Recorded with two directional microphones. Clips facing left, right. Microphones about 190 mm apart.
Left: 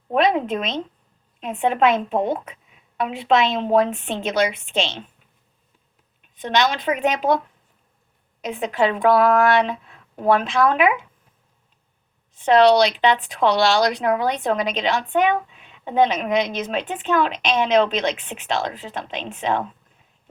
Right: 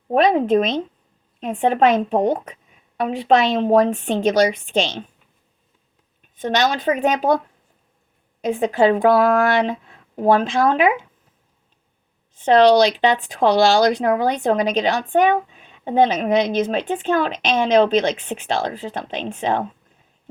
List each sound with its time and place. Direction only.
0.1 s a woman's voice: 35° right (ahead or behind)
6.5 s a woman's voice: 40° right (ahead or behind)
8.5 s a woman's voice: 35° right (ahead or behind)
12.4 s a woman's voice: 35° right (ahead or behind)